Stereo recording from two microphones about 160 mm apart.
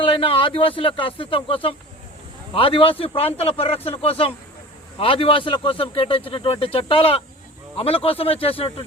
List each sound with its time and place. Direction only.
0.0 s a man's voice: 35° left (ahead or behind)